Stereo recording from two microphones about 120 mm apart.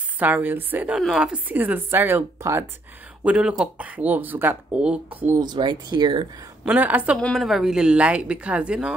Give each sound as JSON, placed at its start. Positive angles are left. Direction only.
{"t": 0.2, "sound": "speech", "side_deg": -15}
{"t": 0.9, "sound": "speech", "side_deg": -5}
{"t": 3.3, "sound": "speech", "side_deg": -5}
{"t": 5.4, "sound": "speech", "side_deg": -40}
{"t": 6.6, "sound": "speech", "side_deg": -10}
{"t": 7.2, "sound": "speech", "side_deg": 5}